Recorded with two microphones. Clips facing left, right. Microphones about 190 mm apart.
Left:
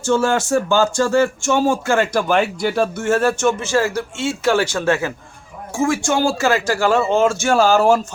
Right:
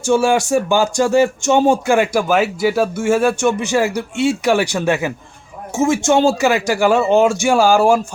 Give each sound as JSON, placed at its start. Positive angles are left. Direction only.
{"t": 0.0, "sound": "speech", "side_deg": -10}